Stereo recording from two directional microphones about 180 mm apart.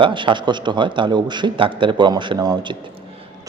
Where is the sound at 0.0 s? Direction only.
25° right (ahead or behind).